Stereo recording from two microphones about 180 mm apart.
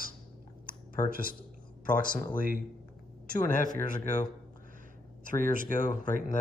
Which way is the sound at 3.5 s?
45° left (ahead or behind).